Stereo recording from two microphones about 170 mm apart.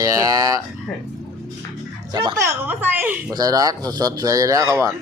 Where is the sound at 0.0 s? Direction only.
20° right (ahead or behind).